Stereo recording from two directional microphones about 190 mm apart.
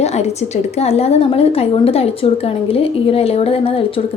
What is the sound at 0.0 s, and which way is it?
A woman's voice, 35° left (ahead or behind).